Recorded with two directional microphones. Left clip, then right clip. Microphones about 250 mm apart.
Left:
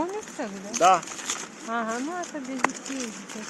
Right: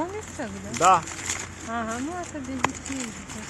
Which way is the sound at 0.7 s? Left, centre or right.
Right.